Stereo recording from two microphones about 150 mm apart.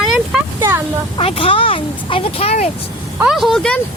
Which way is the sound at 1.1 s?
35° left (ahead or behind).